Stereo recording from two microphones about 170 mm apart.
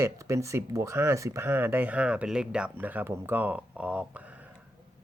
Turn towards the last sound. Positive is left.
turn(degrees=-10)  # may be behind; listen again after turning